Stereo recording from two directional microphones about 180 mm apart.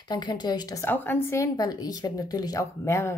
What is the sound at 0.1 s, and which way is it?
A woman's voice, 25° left (ahead or behind).